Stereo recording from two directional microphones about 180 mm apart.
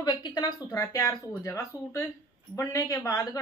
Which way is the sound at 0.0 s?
25° left (ahead or behind).